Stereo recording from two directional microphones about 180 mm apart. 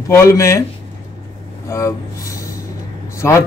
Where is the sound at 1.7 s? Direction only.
15° left (ahead or behind).